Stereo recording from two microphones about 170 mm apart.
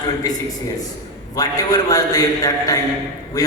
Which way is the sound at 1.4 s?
20° left (ahead or behind).